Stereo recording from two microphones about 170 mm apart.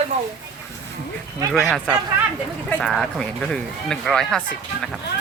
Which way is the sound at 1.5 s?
Centre (ahead or behind).